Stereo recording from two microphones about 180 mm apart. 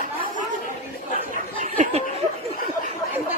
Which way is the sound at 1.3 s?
45° right (ahead or behind).